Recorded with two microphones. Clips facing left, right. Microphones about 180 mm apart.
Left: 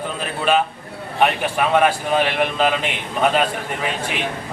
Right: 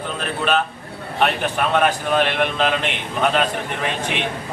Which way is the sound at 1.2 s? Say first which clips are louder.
Left 2 dB; 5° left (ahead or behind).